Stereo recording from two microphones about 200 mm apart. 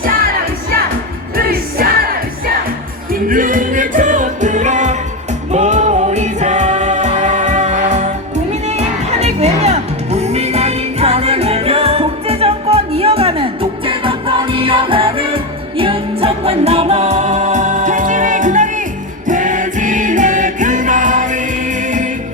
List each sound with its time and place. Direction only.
1.4 s music: 50° right (ahead or behind)
3.1 s music: 45° right (ahead or behind)